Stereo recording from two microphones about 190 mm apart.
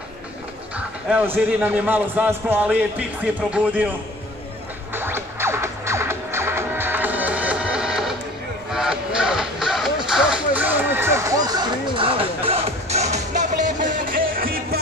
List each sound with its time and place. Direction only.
0.7 s a man's voice: 5° right (ahead or behind)
4.9 s music: 10° right (ahead or behind); by 14.8 s 50° right (ahead or behind)